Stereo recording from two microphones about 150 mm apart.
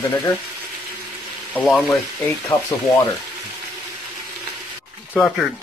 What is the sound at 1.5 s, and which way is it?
Speech, 5° left (ahead or behind).